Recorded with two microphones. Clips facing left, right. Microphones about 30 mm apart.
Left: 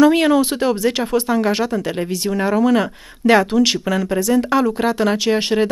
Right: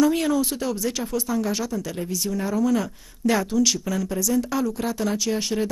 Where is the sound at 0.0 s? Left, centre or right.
Left.